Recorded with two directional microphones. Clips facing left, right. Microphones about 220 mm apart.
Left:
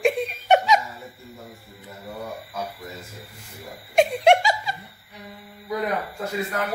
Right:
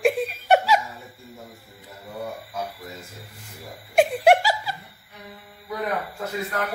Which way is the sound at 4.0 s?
5° right (ahead or behind).